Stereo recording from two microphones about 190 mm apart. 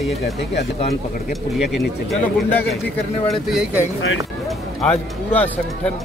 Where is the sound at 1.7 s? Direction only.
Centre (ahead or behind).